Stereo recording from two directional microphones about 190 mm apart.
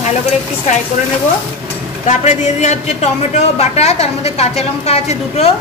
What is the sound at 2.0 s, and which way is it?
A woman's voice, 40° left (ahead or behind).